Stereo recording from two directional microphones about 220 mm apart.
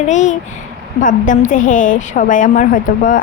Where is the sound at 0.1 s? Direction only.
35° left (ahead or behind).